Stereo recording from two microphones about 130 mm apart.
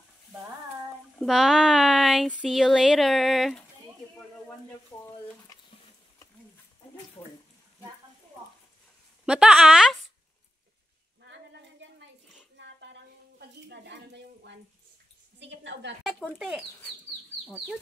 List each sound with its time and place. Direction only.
1.2 s speech: centre (ahead or behind)
4.9 s frying: 25° left (ahead or behind)
9.2 s speech: 5° right (ahead or behind)
16.3 s speech: 5° right (ahead or behind)